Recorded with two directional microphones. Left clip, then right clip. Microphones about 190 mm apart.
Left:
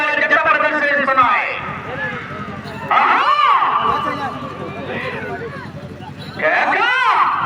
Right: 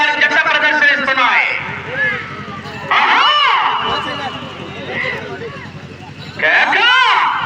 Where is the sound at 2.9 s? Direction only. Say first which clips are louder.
Right 2 dB; 60° left (ahead or behind).